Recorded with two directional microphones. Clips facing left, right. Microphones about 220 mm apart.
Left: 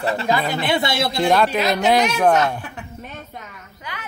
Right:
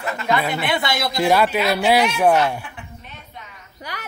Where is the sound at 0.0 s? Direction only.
35° left (ahead or behind).